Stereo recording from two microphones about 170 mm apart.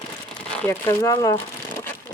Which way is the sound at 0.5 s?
15° left (ahead or behind).